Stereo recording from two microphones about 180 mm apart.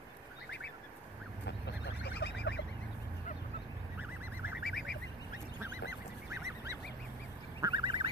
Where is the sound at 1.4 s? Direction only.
70° left (ahead or behind).